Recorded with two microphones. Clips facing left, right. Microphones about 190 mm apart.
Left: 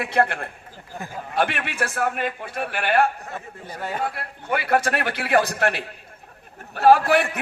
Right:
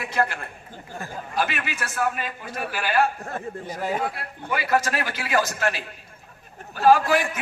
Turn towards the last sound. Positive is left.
turn(degrees=65)  # may be behind; listen again after turning